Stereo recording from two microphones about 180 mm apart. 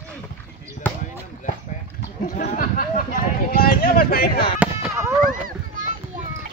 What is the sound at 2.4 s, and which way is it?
Speech, 45° left (ahead or behind).